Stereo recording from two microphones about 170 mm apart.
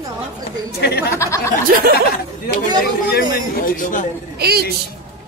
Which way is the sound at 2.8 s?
65° left (ahead or behind).